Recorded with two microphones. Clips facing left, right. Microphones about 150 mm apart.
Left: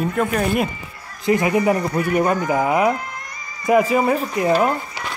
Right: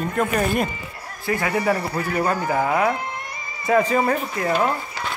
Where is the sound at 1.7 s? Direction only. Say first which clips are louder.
Left 4 dB; 30° right (ahead or behind).